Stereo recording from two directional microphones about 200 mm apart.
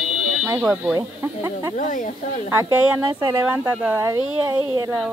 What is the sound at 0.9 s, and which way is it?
Speech, 15° right (ahead or behind).